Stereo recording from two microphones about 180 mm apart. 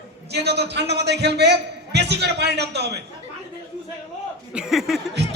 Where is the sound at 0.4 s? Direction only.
65° right (ahead or behind).